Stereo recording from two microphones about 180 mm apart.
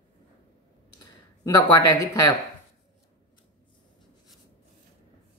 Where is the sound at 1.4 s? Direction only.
20° left (ahead or behind).